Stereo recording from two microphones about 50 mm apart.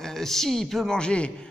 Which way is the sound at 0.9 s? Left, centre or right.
Centre.